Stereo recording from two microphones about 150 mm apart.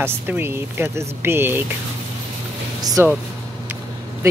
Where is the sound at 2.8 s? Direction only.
25° right (ahead or behind).